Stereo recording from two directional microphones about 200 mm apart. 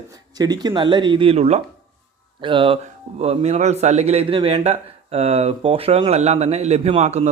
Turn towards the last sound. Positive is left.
turn(degrees=-30)  # may be behind; listen again after turning